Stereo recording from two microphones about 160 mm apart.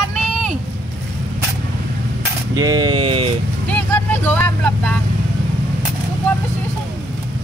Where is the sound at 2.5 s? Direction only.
25° right (ahead or behind).